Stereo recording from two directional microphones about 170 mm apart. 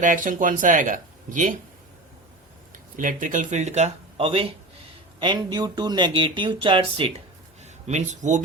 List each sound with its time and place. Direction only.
0.0 s speech: 50° right (ahead or behind)
2.7 s speech: 50° right (ahead or behind); by 7.1 s 30° right (ahead or behind)
7.6 s speech: 40° right (ahead or behind)